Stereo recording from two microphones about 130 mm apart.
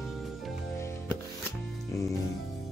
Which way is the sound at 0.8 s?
20° left (ahead or behind).